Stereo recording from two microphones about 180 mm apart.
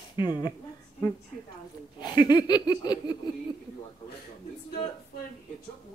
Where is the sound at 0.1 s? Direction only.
25° left (ahead or behind).